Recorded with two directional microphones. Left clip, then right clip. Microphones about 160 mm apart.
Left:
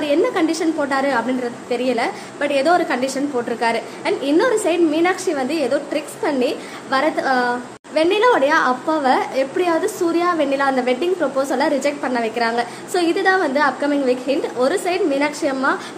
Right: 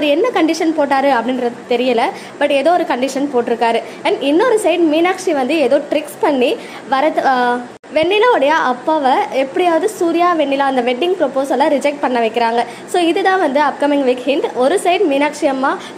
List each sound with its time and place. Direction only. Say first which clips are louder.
0.0 s a woman's voice: right 4 dB; 25° right (ahead or behind)